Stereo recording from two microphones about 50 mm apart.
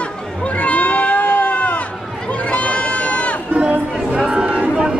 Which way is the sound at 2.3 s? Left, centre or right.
Left.